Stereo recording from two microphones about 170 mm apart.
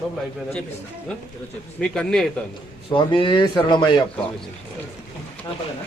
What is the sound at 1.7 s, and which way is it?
Speech, 5° left (ahead or behind).